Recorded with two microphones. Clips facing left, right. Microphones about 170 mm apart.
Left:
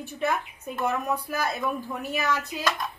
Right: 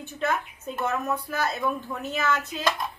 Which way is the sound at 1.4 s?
10° left (ahead or behind).